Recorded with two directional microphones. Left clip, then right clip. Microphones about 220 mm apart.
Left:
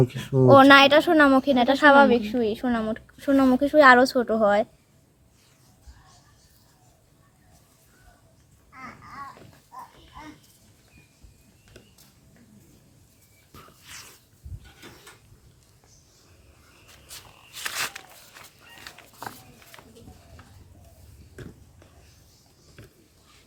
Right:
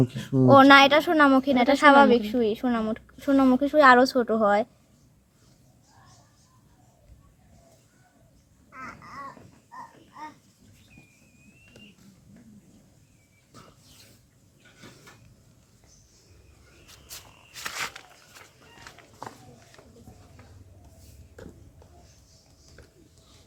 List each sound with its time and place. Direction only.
0.0 s speech: 10° left (ahead or behind)
0.4 s a woman's voice: 5° right (ahead or behind)
17.6 s a sound: 20° left (ahead or behind)